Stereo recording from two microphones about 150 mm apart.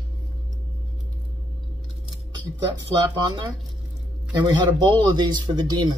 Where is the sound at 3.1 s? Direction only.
30° right (ahead or behind).